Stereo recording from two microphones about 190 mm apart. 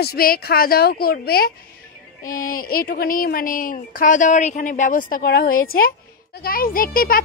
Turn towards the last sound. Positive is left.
turn(degrees=50)  # may be behind; listen again after turning